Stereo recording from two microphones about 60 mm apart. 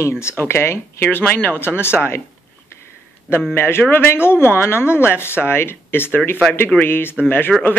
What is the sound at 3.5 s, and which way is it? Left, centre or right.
Speech, left.